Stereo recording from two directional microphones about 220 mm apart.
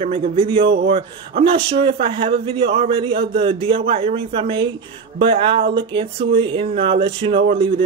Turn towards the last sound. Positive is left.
turn(degrees=-25)  # may be behind; listen again after turning